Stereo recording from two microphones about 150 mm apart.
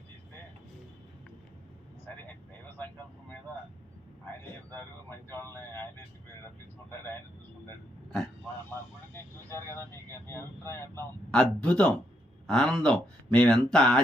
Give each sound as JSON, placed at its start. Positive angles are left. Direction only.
{"t": 2.7, "sound": "vehicle", "side_deg": 10}
{"t": 4.7, "sound": "vehicle", "side_deg": 15}
{"t": 9.1, "sound": "vehicle", "side_deg": 15}
{"t": 11.3, "sound": "speech", "side_deg": 5}